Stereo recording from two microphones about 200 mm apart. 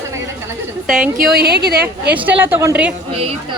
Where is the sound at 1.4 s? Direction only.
55° right (ahead or behind).